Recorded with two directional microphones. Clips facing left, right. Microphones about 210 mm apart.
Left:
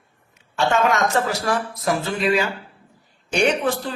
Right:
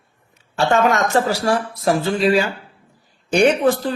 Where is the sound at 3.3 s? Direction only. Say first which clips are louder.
Right 5 dB; 40° right (ahead or behind).